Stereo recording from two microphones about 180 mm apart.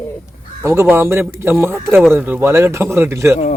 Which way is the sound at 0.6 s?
15° right (ahead or behind).